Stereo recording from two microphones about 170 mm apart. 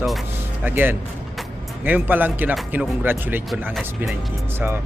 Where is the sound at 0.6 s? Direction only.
10° right (ahead or behind).